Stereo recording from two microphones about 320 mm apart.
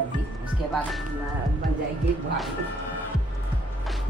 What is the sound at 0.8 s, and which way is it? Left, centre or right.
Speech, centre.